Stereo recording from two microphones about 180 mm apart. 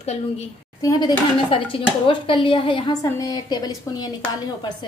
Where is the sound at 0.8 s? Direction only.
25° left (ahead or behind).